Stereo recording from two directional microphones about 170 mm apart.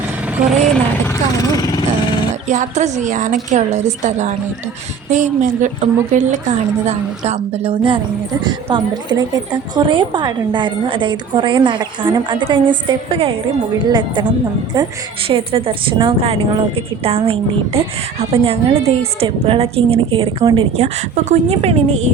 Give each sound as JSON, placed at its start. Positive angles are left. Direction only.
{"t": 2.5, "sound": "a woman's voice", "side_deg": -45}
{"t": 15.3, "sound": "a woman's voice", "side_deg": -35}
{"t": 20.7, "sound": "a woman's voice", "side_deg": -40}